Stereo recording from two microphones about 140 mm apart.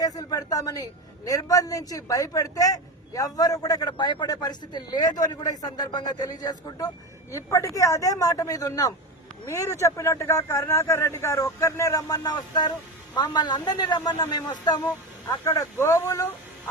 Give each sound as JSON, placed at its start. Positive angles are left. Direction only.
{"t": 0.0, "sound": "a man's voice", "side_deg": 25}